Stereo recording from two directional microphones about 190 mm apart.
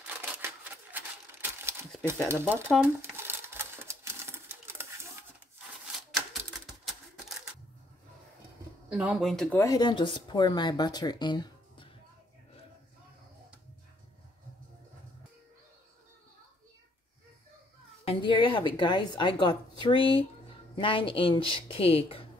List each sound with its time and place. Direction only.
0.0 s typewriter: 10° right (ahead or behind)
2.2 s speech: 10° right (ahead or behind)
2.8 s typewriter: 10° right (ahead or behind)
8.9 s speech: 5° right (ahead or behind)
9.7 s speech: 20° left (ahead or behind)
18.0 s speech: 25° left (ahead or behind)